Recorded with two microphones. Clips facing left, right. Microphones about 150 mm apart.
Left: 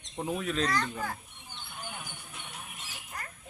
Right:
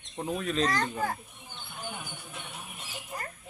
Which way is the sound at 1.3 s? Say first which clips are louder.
Right 1 dB; centre (ahead or behind).